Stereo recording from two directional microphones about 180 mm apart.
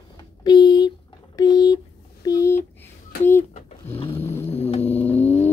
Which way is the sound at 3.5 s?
30° left (ahead or behind).